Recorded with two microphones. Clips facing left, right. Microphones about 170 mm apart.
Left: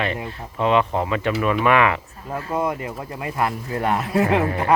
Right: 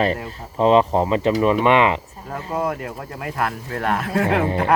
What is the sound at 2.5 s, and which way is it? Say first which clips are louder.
Speech: even; centre (ahead or behind).